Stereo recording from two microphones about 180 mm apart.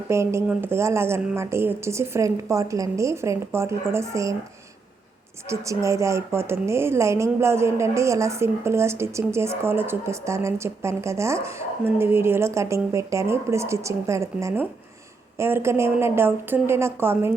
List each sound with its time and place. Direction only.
0.1 s speech: 15° right (ahead or behind)
5.5 s speech: 15° right (ahead or behind)